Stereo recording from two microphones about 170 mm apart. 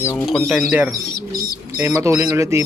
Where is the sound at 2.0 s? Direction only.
15° right (ahead or behind).